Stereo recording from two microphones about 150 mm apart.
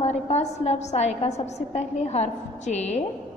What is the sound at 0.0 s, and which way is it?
A woman's voice, 45° left (ahead or behind).